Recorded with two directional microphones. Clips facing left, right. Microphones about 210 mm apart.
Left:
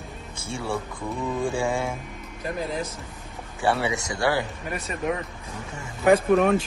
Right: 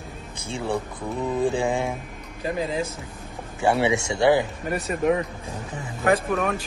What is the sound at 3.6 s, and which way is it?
Speech, 25° right (ahead or behind).